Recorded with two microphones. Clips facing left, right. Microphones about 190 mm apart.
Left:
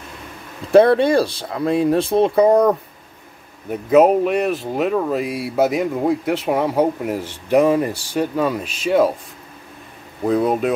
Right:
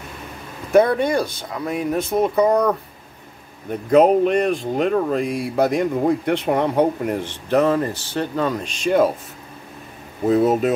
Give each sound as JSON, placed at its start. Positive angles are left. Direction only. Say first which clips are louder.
{"t": 0.7, "sound": "speech", "louder": "left 4 dB", "side_deg": 30}
{"t": 3.7, "sound": "speech", "louder": "left 1 dB", "side_deg": 5}
{"t": 10.3, "sound": "speech", "louder": "right 1 dB", "side_deg": 0}